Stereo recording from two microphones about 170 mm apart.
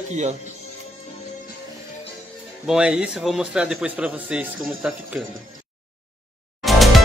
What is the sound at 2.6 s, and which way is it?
A man's voice, 5° right (ahead or behind).